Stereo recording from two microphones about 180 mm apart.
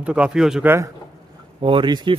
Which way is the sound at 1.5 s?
30° right (ahead or behind).